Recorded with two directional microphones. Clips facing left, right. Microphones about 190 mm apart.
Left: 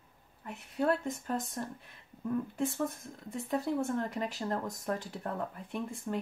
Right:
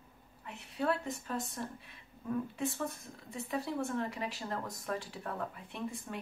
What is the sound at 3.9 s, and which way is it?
Speech, 45° left (ahead or behind).